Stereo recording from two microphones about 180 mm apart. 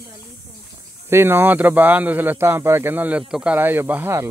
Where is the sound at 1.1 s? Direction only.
15° right (ahead or behind).